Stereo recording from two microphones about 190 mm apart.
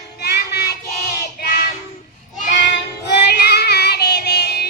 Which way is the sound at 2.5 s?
65° left (ahead or behind).